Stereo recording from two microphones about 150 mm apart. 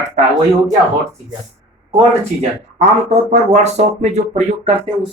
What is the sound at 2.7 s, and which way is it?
Speech, 45° right (ahead or behind).